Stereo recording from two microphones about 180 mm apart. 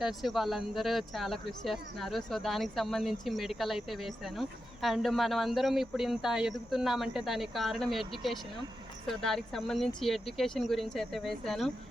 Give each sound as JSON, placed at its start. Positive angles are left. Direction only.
{"t": 0.0, "sound": "speech", "side_deg": 0}